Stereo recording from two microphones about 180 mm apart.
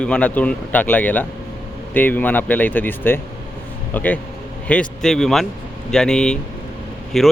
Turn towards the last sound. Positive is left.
turn(degrees=0)  # may be behind; listen again after turning